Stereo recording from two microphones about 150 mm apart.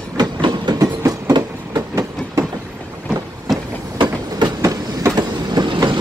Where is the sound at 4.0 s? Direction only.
30° right (ahead or behind).